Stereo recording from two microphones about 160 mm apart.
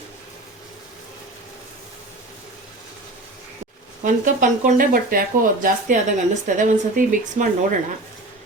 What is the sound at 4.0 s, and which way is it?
Speech, 55° right (ahead or behind).